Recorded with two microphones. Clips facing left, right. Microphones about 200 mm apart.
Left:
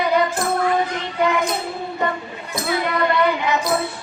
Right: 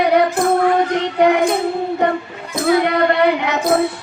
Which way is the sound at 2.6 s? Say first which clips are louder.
Right 7 dB; 60° right (ahead or behind).